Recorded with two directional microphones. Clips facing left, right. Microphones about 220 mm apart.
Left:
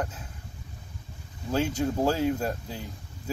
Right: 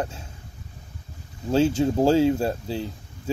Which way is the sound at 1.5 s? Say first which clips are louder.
Right 6 dB; 30° right (ahead or behind).